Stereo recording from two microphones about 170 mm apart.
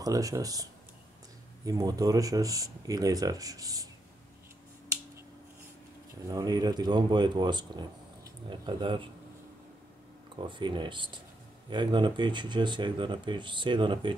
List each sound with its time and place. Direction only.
0.0 s speech: 20° right (ahead or behind)
1.7 s speech: 20° right (ahead or behind)
6.2 s speech: 20° right (ahead or behind)
10.3 s speech: 30° right (ahead or behind)